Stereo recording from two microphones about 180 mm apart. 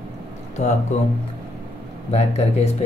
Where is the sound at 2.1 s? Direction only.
35° left (ahead or behind).